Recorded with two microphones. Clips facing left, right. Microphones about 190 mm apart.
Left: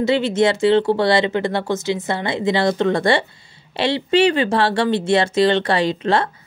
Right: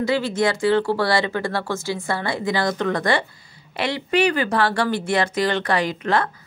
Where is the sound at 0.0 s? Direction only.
25° left (ahead or behind).